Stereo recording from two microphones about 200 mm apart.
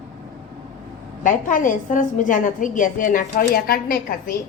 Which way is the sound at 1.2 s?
40° left (ahead or behind).